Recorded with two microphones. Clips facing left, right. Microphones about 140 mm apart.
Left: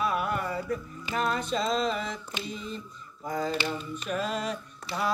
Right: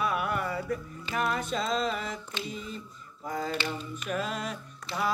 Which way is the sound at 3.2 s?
Centre (ahead or behind).